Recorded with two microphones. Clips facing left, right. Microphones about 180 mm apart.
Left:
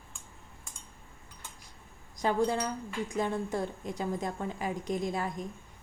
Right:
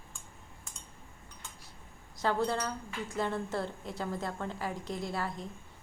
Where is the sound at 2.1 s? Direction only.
15° left (ahead or behind).